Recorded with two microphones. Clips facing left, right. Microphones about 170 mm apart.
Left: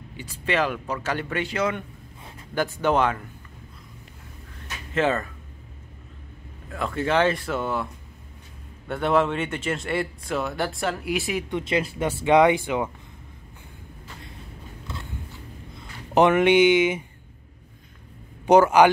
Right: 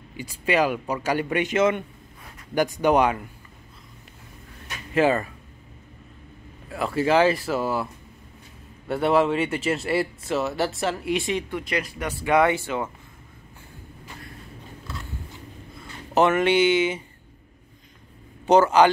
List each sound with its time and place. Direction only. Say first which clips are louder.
0.2 s a man's voice: right 3 dB; 10° right (ahead or behind)
4.9 s a man's voice: right 3 dB; 10° right (ahead or behind)
6.7 s speech: right 3 dB; 5° right (ahead or behind)
11.5 s speech: left 3 dB; 25° left (ahead or behind)
15.8 s speech: left 2 dB; 15° left (ahead or behind)
18.5 s speech: left 1 dB; 10° left (ahead or behind)